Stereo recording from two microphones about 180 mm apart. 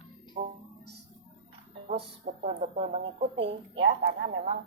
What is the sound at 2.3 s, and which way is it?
Speech, 35° right (ahead or behind).